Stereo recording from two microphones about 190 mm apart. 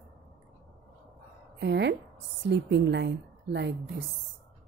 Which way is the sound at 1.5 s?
65° right (ahead or behind).